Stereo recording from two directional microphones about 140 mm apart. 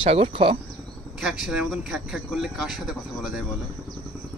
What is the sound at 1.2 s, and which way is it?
Speech, 5° right (ahead or behind).